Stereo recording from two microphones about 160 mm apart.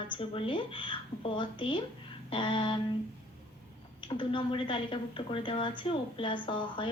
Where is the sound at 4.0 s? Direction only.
30° left (ahead or behind).